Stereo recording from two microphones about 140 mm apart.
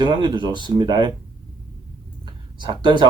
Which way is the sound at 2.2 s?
35° right (ahead or behind).